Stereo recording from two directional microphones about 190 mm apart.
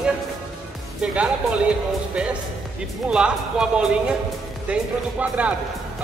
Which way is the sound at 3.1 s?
5° right (ahead or behind).